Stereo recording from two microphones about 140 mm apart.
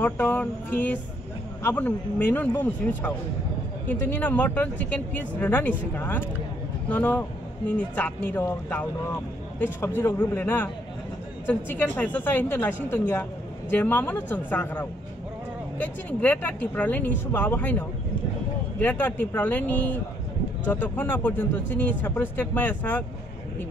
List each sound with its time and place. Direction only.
0.0 s speech: 15° left (ahead or behind)